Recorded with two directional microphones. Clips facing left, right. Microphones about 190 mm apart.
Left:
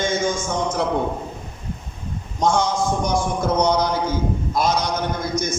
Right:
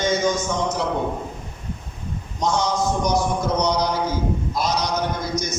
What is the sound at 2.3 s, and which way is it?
A man's voice, 55° left (ahead or behind).